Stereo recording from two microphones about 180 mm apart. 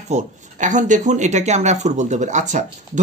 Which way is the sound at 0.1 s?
45° right (ahead or behind).